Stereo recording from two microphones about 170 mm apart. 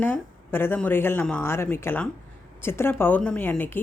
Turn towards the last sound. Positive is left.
turn(degrees=10)  # may be behind; listen again after turning